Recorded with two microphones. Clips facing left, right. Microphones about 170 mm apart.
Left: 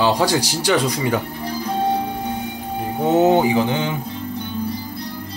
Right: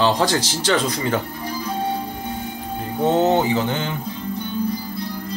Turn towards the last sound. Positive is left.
turn(degrees=15)  # may be behind; listen again after turning